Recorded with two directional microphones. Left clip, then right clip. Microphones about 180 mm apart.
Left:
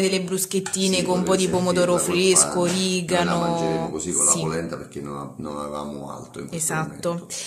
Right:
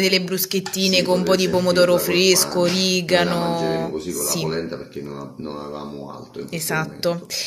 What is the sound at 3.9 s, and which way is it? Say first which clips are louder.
Speech: even; 35° left (ahead or behind).